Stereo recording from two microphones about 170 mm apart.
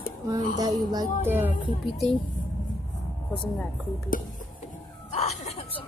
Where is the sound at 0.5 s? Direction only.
20° right (ahead or behind).